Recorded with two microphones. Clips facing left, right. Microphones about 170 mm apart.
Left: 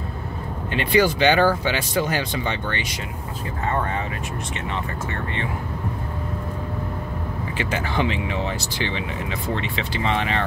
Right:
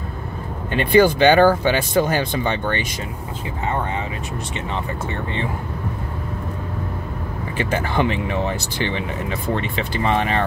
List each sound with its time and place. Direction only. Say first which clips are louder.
0.9 s speech: right 5 dB; 50° right (ahead or behind)
7.5 s speech: right 4 dB; 50° right (ahead or behind)